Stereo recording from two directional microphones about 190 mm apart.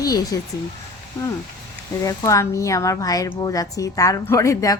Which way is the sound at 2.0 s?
15° left (ahead or behind).